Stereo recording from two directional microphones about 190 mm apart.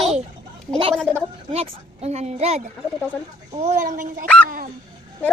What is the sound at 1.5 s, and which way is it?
A woman's voice, 30° right (ahead or behind).